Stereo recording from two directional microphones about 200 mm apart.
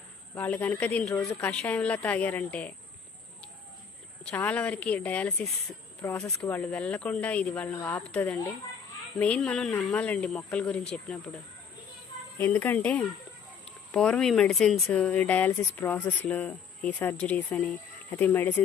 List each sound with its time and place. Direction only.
0.3 s speech: 10° left (ahead or behind)
4.2 s speech: 5° left (ahead or behind)
12.4 s speech: 10° left (ahead or behind)